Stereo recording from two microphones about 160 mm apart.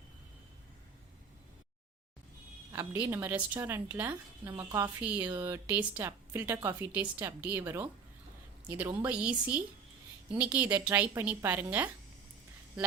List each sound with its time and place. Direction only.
2.7 s a woman's voice: 15° right (ahead or behind)